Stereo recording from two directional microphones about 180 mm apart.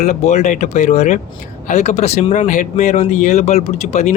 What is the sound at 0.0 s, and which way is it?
Speech, 40° left (ahead or behind).